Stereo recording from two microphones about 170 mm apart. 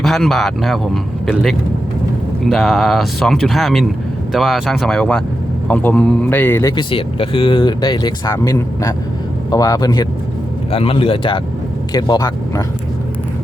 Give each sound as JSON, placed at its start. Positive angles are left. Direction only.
{"t": 0.0, "sound": "a man's voice", "side_deg": 0}
{"t": 6.9, "sound": "speech", "side_deg": 30}
{"t": 10.7, "sound": "speech", "side_deg": 35}